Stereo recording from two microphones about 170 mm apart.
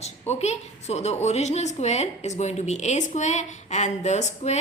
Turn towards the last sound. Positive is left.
turn(degrees=40)  # may be behind; listen again after turning